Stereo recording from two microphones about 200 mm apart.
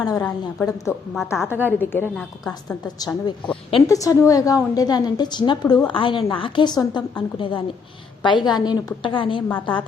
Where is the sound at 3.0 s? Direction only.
20° left (ahead or behind).